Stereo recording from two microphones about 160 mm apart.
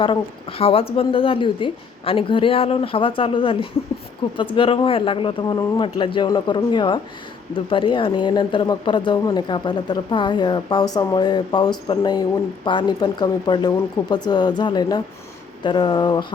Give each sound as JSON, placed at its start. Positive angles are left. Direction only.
{"t": 0.0, "sound": "a woman's voice", "side_deg": 35}